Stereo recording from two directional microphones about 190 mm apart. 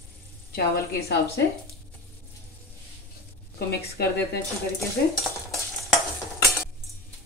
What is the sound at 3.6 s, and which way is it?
Speech, 60° left (ahead or behind).